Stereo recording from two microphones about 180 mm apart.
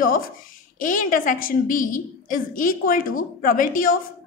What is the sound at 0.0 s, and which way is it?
A woman's voice, 50° left (ahead or behind).